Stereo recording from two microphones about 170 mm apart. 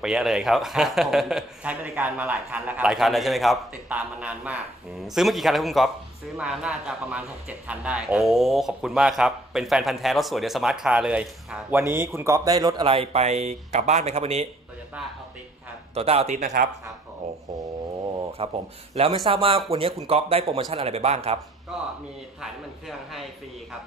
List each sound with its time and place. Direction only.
0.0 s a man's voice: 5° right (ahead or behind); by 14.5 s 40° right (ahead or behind)
15.9 s speech: 35° right (ahead or behind)
18.4 s speech: 35° right (ahead or behind)
21.7 s a man's voice: centre (ahead or behind)